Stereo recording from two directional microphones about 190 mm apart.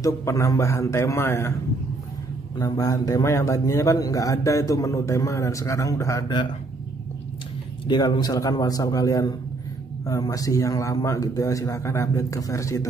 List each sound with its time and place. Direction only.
0.0 s a man's voice: 15° left (ahead or behind)
2.6 s a man's voice: 15° left (ahead or behind)
7.8 s a man's voice: 25° left (ahead or behind)